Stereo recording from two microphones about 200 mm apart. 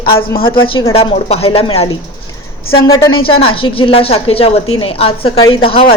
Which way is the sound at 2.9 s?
20° left (ahead or behind).